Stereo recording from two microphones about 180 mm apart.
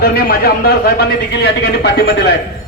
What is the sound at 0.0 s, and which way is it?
A man's voice, 60° left (ahead or behind).